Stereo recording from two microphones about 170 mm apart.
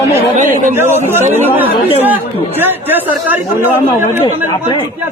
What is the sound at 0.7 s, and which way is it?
Speech, 15° right (ahead or behind).